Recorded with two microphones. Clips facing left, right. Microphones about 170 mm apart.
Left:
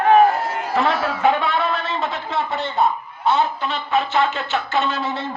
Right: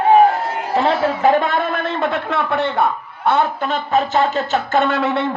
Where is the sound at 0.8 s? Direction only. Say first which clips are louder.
Right 3 dB; 30° right (ahead or behind).